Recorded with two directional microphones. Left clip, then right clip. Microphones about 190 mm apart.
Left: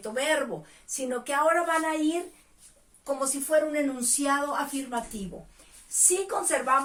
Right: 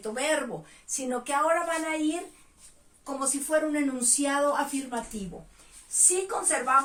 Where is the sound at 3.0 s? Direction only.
15° right (ahead or behind).